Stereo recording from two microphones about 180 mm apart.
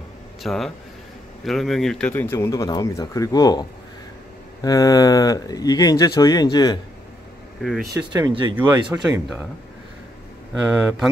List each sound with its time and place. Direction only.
0.4 s speech: centre (ahead or behind); by 3.6 s 20° left (ahead or behind)
4.6 s speech: 20° left (ahead or behind)
7.6 s speech: centre (ahead or behind)
7.9 s speech: 20° right (ahead or behind)
10.8 s speech: 10° right (ahead or behind)